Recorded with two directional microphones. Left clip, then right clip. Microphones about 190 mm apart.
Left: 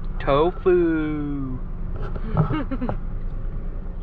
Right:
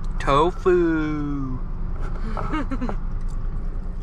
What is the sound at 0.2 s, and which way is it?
Speech, 25° right (ahead or behind).